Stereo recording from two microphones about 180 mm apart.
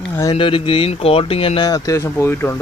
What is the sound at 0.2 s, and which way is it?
Speech, 25° left (ahead or behind).